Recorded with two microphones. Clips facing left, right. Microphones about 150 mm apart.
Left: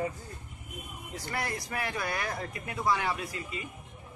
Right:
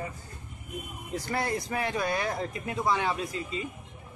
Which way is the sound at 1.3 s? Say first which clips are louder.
Right 4 dB; 25° right (ahead or behind).